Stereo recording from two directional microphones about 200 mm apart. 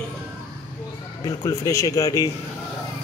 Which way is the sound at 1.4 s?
15° left (ahead or behind).